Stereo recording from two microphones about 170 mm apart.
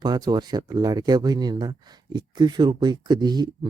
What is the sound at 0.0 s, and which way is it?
Speech, 25° right (ahead or behind).